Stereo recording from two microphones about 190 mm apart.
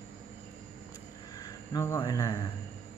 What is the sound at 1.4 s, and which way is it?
Speech, 20° left (ahead or behind).